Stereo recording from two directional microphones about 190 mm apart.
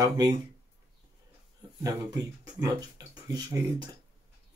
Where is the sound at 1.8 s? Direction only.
20° right (ahead or behind).